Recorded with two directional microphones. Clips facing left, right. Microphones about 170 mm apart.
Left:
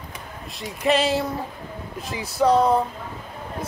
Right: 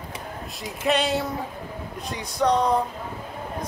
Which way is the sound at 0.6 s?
Centre (ahead or behind).